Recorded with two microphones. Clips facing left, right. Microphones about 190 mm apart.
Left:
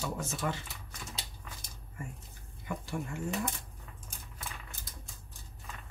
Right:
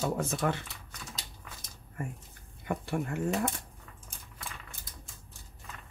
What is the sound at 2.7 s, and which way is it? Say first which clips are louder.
Speech: right 5 dB; 60° right (ahead or behind).